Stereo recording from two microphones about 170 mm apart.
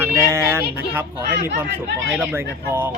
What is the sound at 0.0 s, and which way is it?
Child singing, 15° right (ahead or behind).